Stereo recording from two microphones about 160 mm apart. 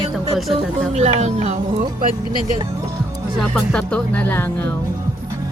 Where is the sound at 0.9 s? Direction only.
45° right (ahead or behind).